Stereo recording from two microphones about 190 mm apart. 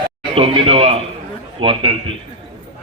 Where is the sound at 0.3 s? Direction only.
30° right (ahead or behind).